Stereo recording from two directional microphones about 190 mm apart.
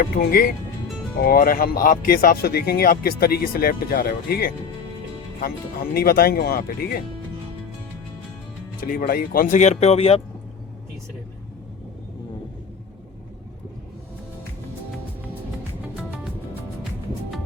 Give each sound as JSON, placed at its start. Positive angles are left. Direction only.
{"t": 0.0, "sound": "speech", "side_deg": 50}
{"t": 8.9, "sound": "speech", "side_deg": 50}